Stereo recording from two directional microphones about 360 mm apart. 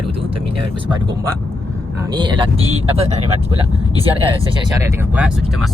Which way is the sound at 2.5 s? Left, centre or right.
Right.